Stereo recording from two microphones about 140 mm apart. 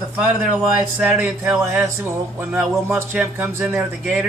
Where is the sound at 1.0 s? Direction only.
10° right (ahead or behind).